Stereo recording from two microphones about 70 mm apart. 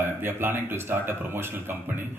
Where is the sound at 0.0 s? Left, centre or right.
Right.